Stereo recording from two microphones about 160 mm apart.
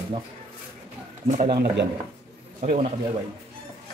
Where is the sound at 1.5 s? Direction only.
70° right (ahead or behind).